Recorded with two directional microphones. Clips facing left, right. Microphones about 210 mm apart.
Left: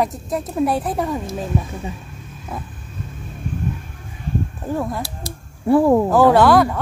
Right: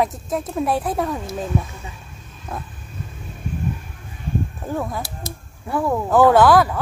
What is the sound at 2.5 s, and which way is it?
Speech, centre (ahead or behind).